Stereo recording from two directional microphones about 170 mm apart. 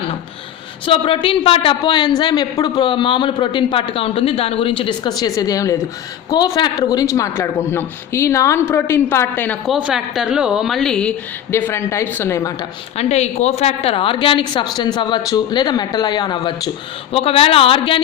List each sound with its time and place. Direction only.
0.9 s a man's voice: 30° left (ahead or behind); by 9.6 s 10° left (ahead or behind)
9.6 s a woman's voice: 5° right (ahead or behind)
11.5 s speech: 15° left (ahead or behind)
13.0 s a man's voice: 40° left (ahead or behind); by 16.6 s 25° left (ahead or behind)
17.1 s speech: 35° left (ahead or behind)